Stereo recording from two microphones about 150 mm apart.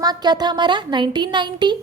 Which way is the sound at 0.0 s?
25° right (ahead or behind).